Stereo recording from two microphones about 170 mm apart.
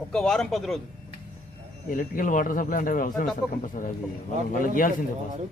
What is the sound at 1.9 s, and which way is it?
A man's voice, 50° left (ahead or behind).